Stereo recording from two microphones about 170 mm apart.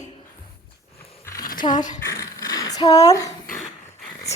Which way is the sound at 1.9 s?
15° left (ahead or behind).